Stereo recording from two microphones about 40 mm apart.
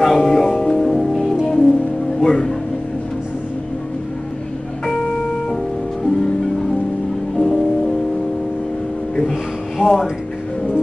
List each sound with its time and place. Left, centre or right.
0.0 s music: centre
7.3 s music: centre
9.8 s a sound: right